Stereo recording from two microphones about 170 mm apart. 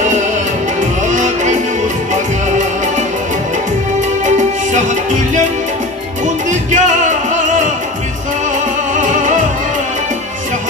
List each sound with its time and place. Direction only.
1.0 s music: 45° right (ahead or behind)
4.4 s music: 45° right (ahead or behind)